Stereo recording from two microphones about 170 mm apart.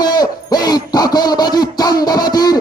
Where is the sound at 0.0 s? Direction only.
25° left (ahead or behind).